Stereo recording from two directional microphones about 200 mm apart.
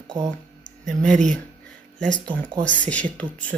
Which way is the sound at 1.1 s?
40° right (ahead or behind).